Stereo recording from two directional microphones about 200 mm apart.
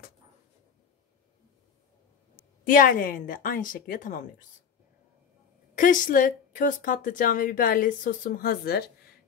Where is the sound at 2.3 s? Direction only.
45° left (ahead or behind).